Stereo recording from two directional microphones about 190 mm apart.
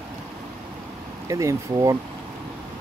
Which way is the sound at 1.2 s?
15° right (ahead or behind).